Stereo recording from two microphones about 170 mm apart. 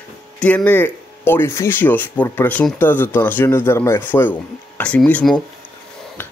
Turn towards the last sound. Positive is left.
turn(degrees=5)  # may be behind; listen again after turning